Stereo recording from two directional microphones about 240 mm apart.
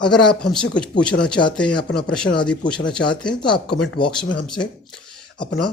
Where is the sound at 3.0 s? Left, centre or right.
Left.